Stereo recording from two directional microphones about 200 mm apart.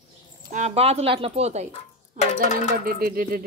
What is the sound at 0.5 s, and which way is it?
A woman's voice, 35° right (ahead or behind).